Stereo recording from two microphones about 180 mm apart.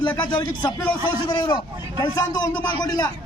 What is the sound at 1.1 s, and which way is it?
A man's voice, 25° left (ahead or behind).